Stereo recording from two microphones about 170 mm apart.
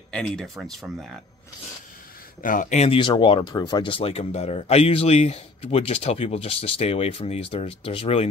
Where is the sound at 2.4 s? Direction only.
50° left (ahead or behind).